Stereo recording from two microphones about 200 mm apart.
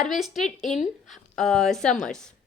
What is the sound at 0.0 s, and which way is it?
A woman's voice, centre (ahead or behind).